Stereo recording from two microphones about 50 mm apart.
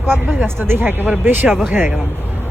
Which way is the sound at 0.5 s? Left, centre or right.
Right.